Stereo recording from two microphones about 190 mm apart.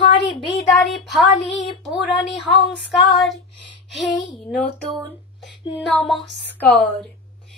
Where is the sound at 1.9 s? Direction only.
Centre (ahead or behind).